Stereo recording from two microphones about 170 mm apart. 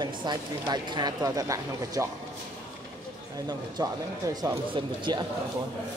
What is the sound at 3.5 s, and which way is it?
Speech, 25° right (ahead or behind).